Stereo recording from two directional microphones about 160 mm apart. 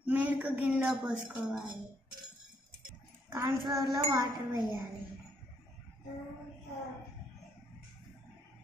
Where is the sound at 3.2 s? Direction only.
15° right (ahead or behind).